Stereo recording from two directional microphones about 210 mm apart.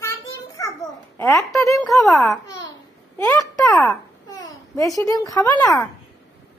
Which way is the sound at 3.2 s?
15° left (ahead or behind).